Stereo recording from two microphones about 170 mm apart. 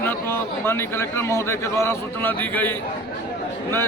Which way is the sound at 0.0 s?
15° left (ahead or behind).